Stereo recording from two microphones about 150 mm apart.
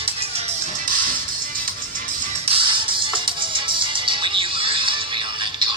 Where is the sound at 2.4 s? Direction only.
35° right (ahead or behind).